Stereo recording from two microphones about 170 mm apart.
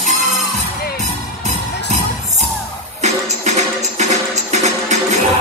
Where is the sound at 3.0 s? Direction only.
45° right (ahead or behind).